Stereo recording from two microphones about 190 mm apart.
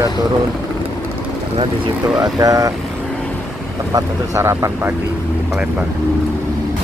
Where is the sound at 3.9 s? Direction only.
15° right (ahead or behind).